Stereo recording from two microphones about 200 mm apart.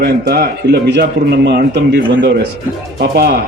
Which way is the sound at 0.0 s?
50° right (ahead or behind).